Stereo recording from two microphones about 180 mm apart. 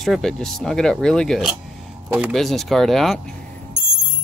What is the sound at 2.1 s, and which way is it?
Speech, 10° right (ahead or behind).